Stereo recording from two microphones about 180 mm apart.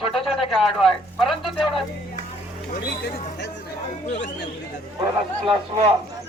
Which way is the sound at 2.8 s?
65° left (ahead or behind).